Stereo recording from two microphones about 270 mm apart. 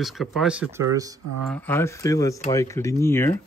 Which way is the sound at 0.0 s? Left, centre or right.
Centre.